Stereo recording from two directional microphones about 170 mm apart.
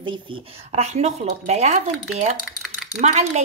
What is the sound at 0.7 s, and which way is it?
Speech, 40° right (ahead or behind).